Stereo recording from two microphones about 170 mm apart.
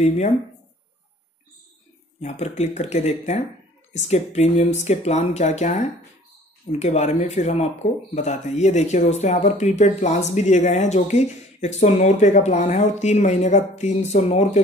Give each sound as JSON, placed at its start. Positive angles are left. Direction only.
{"t": 2.2, "sound": "speech", "side_deg": 40}